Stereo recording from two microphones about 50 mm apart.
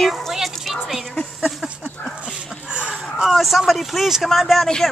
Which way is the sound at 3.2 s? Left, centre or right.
Centre.